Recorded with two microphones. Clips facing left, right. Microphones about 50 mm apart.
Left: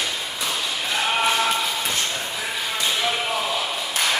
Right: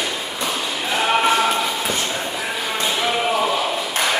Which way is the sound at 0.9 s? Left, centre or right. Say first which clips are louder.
Right 4 dB; centre.